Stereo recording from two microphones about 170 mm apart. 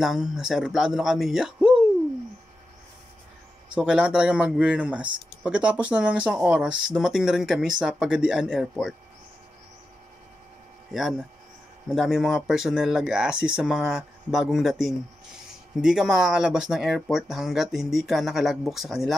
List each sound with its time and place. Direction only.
0.0 s speech: 5° right (ahead or behind)
3.7 s speech: 5° right (ahead or behind)
10.9 s speech: centre (ahead or behind)